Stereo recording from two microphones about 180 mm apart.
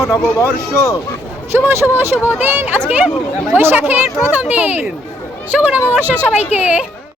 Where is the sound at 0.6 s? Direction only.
15° left (ahead or behind).